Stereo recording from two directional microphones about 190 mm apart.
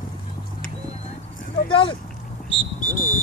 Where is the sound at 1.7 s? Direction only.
25° left (ahead or behind).